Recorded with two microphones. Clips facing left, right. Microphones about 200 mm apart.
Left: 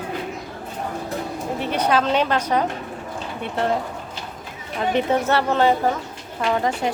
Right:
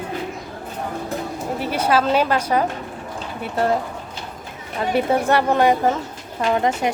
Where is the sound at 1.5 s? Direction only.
5° right (ahead or behind).